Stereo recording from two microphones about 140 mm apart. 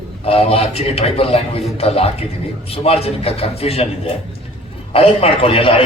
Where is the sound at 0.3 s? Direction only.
45° left (ahead or behind).